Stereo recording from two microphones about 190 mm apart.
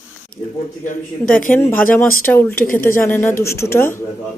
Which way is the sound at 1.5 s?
10° left (ahead or behind).